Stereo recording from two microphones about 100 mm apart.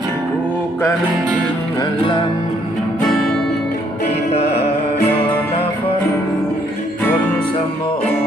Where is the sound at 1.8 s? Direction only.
55° left (ahead or behind).